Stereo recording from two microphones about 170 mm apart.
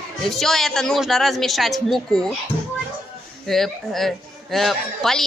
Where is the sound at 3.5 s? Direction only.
Centre (ahead or behind).